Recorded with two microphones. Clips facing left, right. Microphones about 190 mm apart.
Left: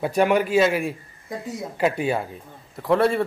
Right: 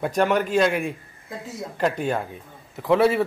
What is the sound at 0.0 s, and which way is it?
A man's voice, 10° left (ahead or behind).